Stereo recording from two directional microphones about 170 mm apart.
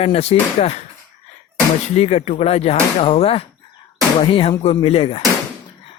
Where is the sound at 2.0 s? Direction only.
40° left (ahead or behind).